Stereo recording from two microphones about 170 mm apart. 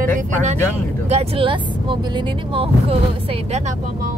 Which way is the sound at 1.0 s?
35° right (ahead or behind).